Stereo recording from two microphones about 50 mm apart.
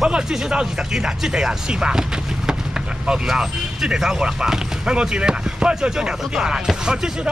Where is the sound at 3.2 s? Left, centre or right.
Centre.